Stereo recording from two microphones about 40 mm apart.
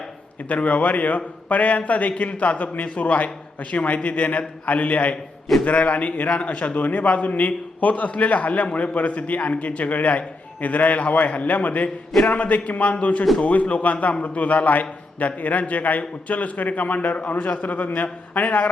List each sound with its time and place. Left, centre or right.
0.4 s a man's voice: left